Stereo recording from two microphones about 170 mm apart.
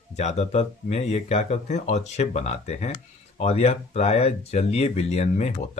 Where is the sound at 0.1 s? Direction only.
40° left (ahead or behind).